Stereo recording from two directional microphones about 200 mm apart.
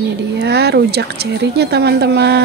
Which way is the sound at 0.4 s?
55° right (ahead or behind).